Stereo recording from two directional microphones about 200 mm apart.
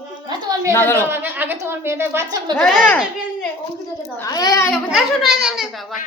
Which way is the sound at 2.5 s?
5° left (ahead or behind).